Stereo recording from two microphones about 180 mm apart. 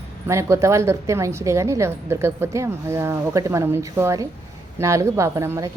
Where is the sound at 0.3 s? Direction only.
15° right (ahead or behind).